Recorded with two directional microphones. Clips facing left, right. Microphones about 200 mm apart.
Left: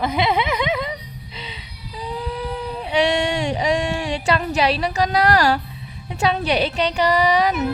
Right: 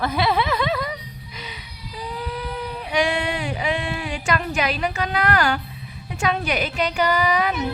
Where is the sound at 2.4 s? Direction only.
30° left (ahead or behind).